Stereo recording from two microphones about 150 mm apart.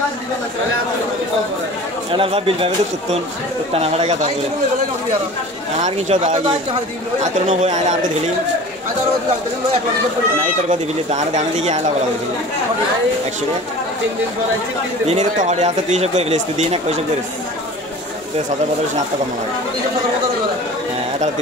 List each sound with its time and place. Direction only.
2.1 s speech: 40° right (ahead or behind)
5.8 s speech: 50° right (ahead or behind)
10.7 s speech: 50° right (ahead or behind)
15.0 s speech: 50° right (ahead or behind)